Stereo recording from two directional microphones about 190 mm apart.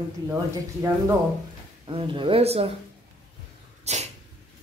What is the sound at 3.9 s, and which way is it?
Speech, 35° right (ahead or behind).